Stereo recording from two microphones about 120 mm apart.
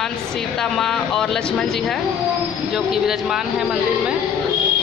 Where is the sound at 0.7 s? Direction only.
5° left (ahead or behind).